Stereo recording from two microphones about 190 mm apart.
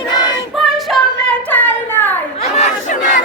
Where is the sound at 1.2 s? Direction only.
10° left (ahead or behind).